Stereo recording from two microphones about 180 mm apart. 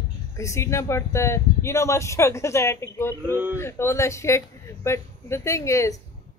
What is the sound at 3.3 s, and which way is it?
Speech, 10° right (ahead or behind).